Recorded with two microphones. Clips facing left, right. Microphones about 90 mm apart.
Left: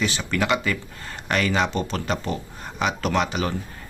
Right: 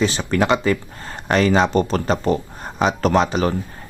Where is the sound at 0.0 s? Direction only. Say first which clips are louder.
Right 6 dB; 35° right (ahead or behind).